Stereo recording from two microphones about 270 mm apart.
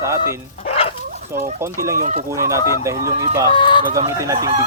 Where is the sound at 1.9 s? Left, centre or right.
Right.